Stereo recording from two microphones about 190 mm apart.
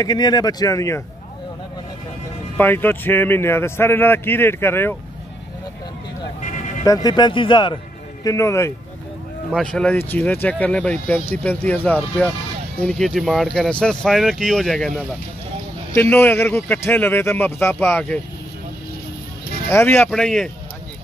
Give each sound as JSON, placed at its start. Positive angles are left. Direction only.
{"t": 0.0, "sound": "speech", "side_deg": 20}
{"t": 2.5, "sound": "a man's voice", "side_deg": 10}
{"t": 6.4, "sound": "a sound", "side_deg": 40}
{"t": 6.8, "sound": "speech", "side_deg": 20}
{"t": 9.5, "sound": "a man's voice", "side_deg": 5}
{"t": 19.7, "sound": "a man's voice", "side_deg": 10}